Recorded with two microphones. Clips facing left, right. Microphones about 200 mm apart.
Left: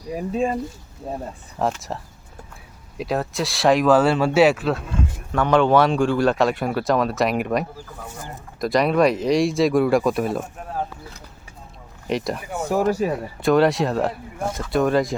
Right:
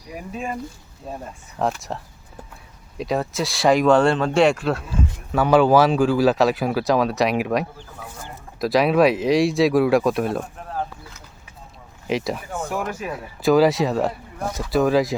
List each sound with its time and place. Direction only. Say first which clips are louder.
0.3 s speech: left 7 dB; 30° left (ahead or behind)
1.5 s speech: even; centre (ahead or behind)
3.0 s speech: right 1 dB; centre (ahead or behind)
12.0 s speech: even; centre (ahead or behind)
12.7 s speech: left 10 dB; 35° left (ahead or behind)
13.4 s speech: right 1 dB; centre (ahead or behind)